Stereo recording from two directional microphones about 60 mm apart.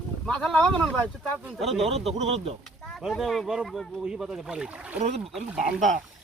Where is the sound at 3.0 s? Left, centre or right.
Centre.